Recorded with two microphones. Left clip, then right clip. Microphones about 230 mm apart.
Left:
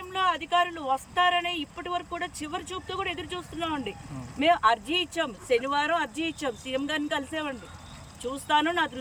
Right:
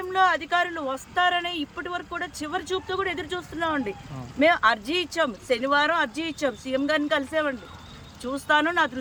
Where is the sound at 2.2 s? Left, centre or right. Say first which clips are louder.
Right 3 dB; right.